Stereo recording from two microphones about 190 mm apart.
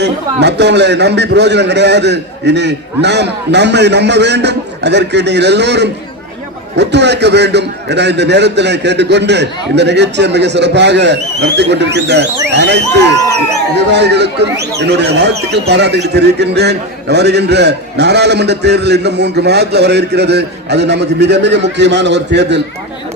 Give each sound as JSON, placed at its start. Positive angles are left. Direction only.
{"t": 0.0, "sound": "a man's voice", "side_deg": -60}